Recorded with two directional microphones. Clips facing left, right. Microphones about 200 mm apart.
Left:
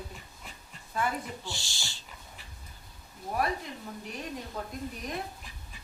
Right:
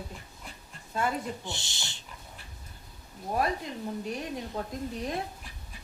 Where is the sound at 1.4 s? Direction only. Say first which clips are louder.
Right 2 dB; 20° right (ahead or behind).